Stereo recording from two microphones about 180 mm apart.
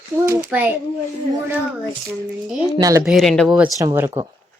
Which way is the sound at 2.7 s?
20° right (ahead or behind).